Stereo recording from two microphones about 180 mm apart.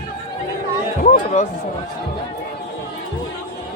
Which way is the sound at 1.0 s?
45° left (ahead or behind).